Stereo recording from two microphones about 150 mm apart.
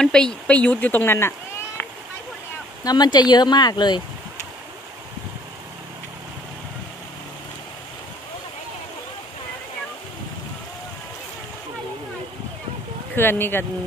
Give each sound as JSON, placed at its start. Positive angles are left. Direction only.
{"t": 0.0, "sound": "speech", "side_deg": 5}
{"t": 2.8, "sound": "speech", "side_deg": 25}
{"t": 13.1, "sound": "speech", "side_deg": 15}